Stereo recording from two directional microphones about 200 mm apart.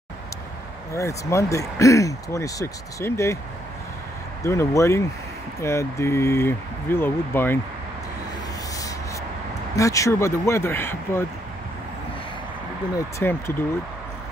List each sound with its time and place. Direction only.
0.9 s speech: 15° left (ahead or behind)
4.4 s speech: 15° left (ahead or behind)
8.7 s a sound: 15° left (ahead or behind)
9.8 s speech: 15° left (ahead or behind)
12.9 s speech: 10° left (ahead or behind)